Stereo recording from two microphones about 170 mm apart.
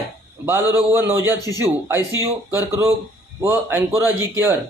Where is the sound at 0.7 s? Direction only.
15° right (ahead or behind).